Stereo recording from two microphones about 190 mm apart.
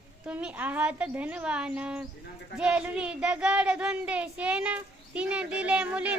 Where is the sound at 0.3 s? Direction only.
5° right (ahead or behind).